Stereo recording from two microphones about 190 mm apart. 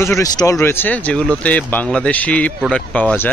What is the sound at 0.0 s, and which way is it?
Speech, 15° left (ahead or behind).